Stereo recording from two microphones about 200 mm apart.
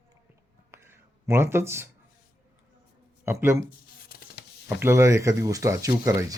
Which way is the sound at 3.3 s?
15° right (ahead or behind).